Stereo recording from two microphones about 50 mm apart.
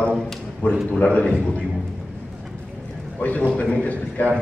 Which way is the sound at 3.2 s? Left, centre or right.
Left.